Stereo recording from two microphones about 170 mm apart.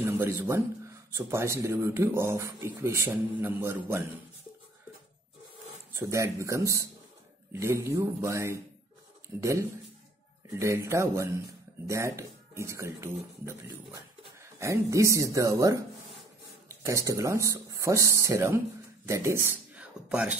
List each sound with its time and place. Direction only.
0.0 s speech: 15° right (ahead or behind)
5.9 s speech: 15° right (ahead or behind)